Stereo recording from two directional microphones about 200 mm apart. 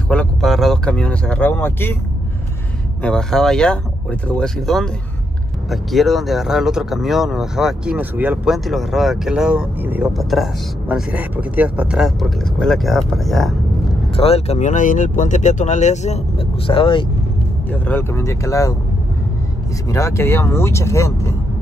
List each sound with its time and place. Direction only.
0.1 s speech: 5° left (ahead or behind)
3.0 s speech: 5° left (ahead or behind)
14.1 s speech: 30° left (ahead or behind)
17.6 s speech: 10° left (ahead or behind)
19.9 s speech: 15° left (ahead or behind)